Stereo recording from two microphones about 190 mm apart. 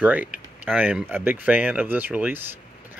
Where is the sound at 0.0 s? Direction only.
10° right (ahead or behind).